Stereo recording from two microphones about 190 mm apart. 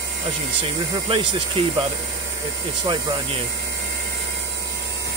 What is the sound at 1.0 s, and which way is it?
Speech, 30° right (ahead or behind).